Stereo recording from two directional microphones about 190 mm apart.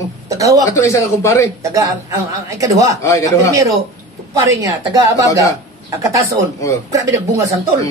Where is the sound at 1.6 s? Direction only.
15° right (ahead or behind).